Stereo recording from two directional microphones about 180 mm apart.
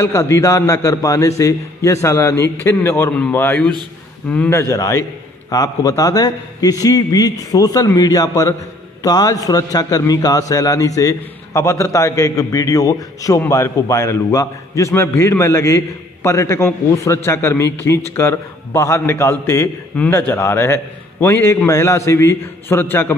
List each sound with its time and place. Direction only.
0.0 s a man's voice: 15° left (ahead or behind)